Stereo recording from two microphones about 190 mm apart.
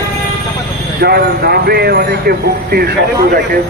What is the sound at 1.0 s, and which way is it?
A man's voice, 55° right (ahead or behind).